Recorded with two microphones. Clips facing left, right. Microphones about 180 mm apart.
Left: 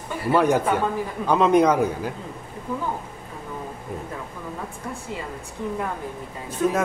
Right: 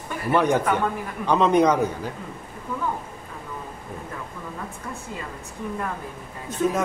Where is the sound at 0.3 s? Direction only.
10° left (ahead or behind).